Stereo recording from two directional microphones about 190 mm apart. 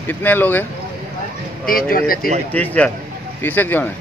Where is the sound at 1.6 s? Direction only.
50° left (ahead or behind).